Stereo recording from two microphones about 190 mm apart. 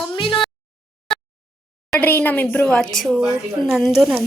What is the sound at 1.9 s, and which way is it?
A woman's voice, 10° left (ahead or behind).